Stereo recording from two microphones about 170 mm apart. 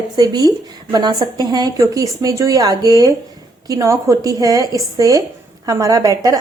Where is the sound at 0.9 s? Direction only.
25° right (ahead or behind).